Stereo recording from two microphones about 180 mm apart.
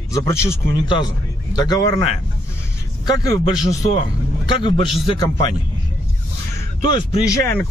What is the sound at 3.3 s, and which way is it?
Speech, 20° left (ahead or behind).